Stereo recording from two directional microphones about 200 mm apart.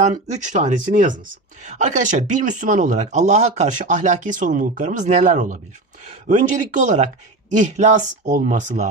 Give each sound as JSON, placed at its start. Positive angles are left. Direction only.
{"t": 0.0, "sound": "speech", "side_deg": -35}